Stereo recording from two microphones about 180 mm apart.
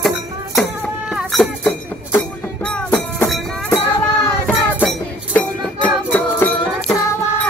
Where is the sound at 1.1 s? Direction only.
Centre (ahead or behind).